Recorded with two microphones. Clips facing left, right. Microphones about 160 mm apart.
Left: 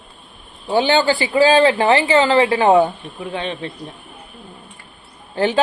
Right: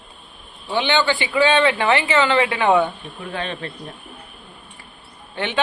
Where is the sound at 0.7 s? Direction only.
40° left (ahead or behind); by 3.7 s 25° left (ahead or behind).